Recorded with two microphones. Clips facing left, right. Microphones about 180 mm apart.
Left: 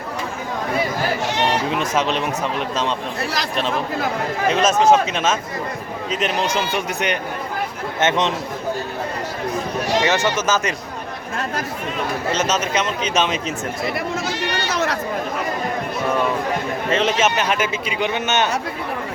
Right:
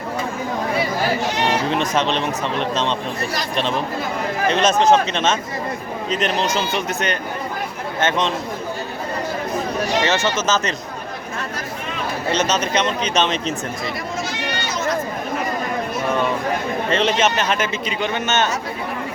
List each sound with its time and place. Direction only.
1.7 s a man's voice: 5° left (ahead or behind)
4.4 s a man's voice: 5° left (ahead or behind)
10.0 s a man's voice: 15° left (ahead or behind)
12.3 s a man's voice: 5° left (ahead or behind)
14.7 s a sound: 65° left (ahead or behind)
16.9 s a man's voice: 5° left (ahead or behind)